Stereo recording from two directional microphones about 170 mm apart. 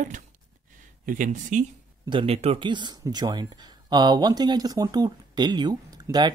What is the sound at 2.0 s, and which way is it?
Speech, 30° right (ahead or behind).